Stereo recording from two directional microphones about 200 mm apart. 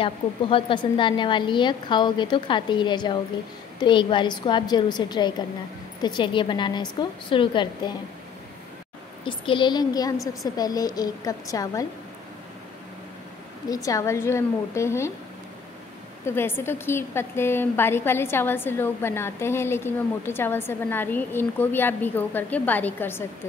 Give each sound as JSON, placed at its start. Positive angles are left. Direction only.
{"t": 0.0, "sound": "a woman's voice", "side_deg": 25}
{"t": 9.2, "sound": "a woman's voice", "side_deg": 25}
{"t": 13.8, "sound": "a woman's voice", "side_deg": 15}
{"t": 16.3, "sound": "a woman's voice", "side_deg": 10}